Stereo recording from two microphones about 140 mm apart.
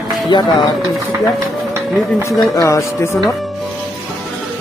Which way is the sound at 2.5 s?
25° left (ahead or behind).